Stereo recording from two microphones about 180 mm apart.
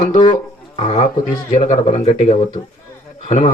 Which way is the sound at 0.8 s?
40° left (ahead or behind).